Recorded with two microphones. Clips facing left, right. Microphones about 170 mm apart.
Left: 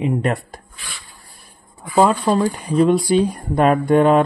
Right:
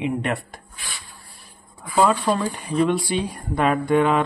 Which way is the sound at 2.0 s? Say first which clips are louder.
Left 4 dB; 40° left (ahead or behind).